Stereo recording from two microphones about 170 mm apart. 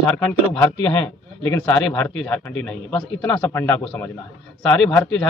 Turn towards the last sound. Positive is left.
turn(degrees=5)  # may be behind; listen again after turning